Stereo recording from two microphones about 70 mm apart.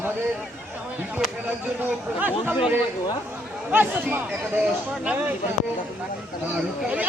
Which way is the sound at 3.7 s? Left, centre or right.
Right.